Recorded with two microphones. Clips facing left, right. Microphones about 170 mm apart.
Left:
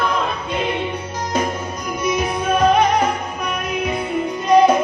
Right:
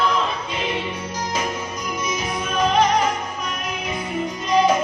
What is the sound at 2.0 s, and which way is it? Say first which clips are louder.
Music: left 8 dB; 60° left (ahead or behind).